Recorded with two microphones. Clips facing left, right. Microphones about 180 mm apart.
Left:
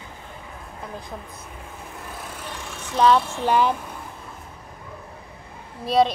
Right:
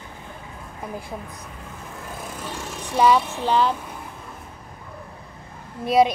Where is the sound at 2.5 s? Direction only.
40° right (ahead or behind).